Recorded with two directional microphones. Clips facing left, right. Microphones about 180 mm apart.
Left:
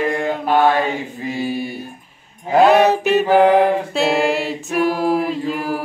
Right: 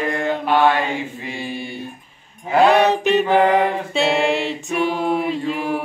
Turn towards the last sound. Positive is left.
turn(degrees=0)  # may be behind; listen again after turning